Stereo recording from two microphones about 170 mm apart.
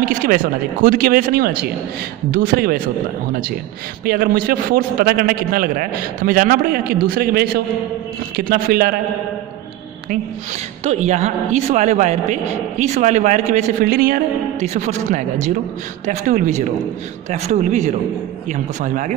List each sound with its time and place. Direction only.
0.0 s a man's voice: 55° right (ahead or behind)
4.0 s a man's voice: 60° right (ahead or behind)
10.8 s a man's voice: 40° right (ahead or behind)
13.8 s a man's voice: 60° right (ahead or behind)
14.7 s a man's voice: 45° right (ahead or behind)